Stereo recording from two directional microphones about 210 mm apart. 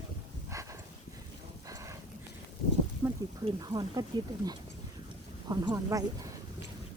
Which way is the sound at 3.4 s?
20° right (ahead or behind).